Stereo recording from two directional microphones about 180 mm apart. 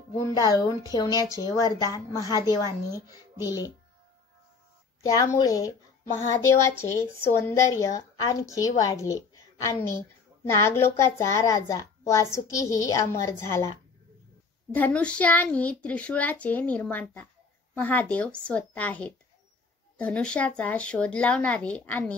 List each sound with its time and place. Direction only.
0.4 s a woman's voice: 20° left (ahead or behind)
5.0 s a woman's voice: 20° left (ahead or behind)